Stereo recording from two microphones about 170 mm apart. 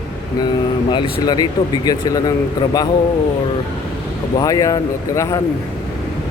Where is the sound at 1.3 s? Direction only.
25° left (ahead or behind).